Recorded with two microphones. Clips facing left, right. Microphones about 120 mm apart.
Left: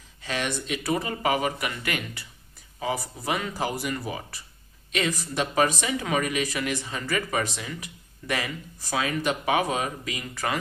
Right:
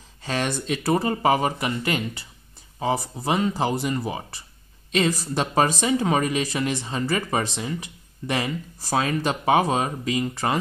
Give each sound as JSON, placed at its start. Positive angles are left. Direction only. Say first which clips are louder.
{"t": 0.2, "sound": "speech", "louder": "right 4 dB", "side_deg": -35}